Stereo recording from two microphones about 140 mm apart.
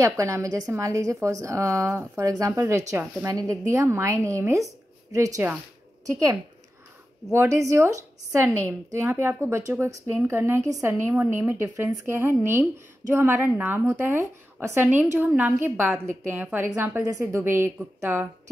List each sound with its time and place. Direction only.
0.0 s a woman's voice: 20° right (ahead or behind)
7.3 s a woman's voice: 25° right (ahead or behind)